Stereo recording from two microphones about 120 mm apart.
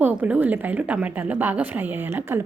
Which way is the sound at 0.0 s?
15° right (ahead or behind).